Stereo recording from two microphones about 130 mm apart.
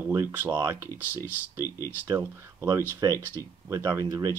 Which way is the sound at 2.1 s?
20° right (ahead or behind).